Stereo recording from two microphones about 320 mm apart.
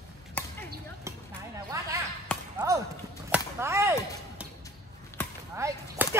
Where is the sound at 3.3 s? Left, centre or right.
Centre.